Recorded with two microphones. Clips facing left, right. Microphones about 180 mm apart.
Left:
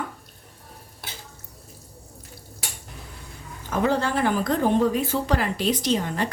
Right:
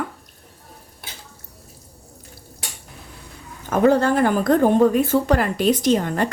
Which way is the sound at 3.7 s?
50° right (ahead or behind).